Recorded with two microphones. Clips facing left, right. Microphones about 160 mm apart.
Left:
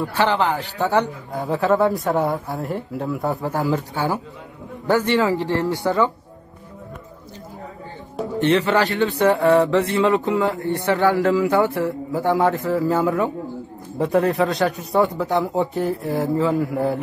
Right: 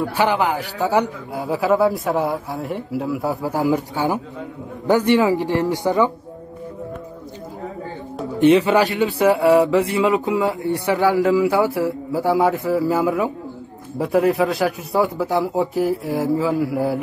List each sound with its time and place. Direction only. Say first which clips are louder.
0.1 s a man's voice: left 1 dB; 10° right (ahead or behind)
3.5 s speech: right 3 dB; 15° right (ahead or behind)
8.4 s a man's voice: right 4 dB; 15° right (ahead or behind)